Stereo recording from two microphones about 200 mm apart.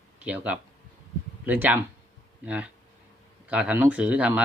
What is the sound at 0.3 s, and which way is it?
A man's voice, 5° right (ahead or behind).